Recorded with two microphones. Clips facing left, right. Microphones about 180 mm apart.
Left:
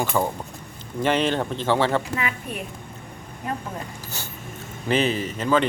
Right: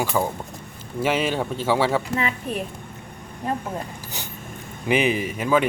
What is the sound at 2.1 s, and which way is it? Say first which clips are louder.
Speech: right 3 dB; 30° right (ahead or behind).